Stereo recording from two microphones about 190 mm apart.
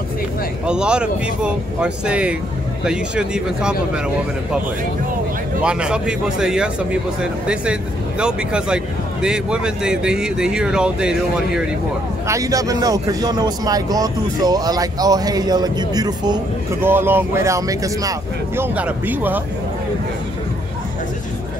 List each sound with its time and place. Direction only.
0.7 s a man's voice: 5° right (ahead or behind)
5.6 s a man's voice: 5° right (ahead or behind)
12.3 s speech: 15° right (ahead or behind)